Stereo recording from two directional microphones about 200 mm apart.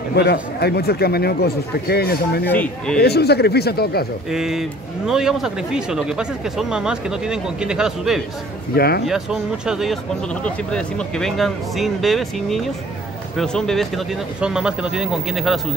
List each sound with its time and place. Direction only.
0.1 s speech: 55° left (ahead or behind)
2.4 s speech: 10° left (ahead or behind)
3.0 s speech: 55° left (ahead or behind)
4.3 s speech: centre (ahead or behind)
8.7 s speech: 50° left (ahead or behind)
9.0 s speech: 5° right (ahead or behind)